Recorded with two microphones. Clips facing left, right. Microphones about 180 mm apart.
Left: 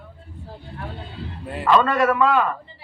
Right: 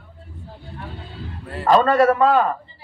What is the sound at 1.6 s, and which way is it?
Speech, 40° right (ahead or behind).